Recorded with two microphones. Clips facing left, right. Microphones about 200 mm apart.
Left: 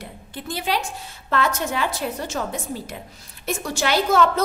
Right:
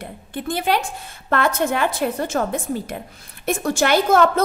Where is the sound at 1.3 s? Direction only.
55° right (ahead or behind).